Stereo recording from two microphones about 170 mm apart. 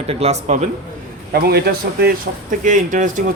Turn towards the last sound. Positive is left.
turn(degrees=-50)  # may be behind; listen again after turning